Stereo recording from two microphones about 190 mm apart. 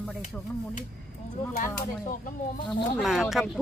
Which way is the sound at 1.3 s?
45° left (ahead or behind).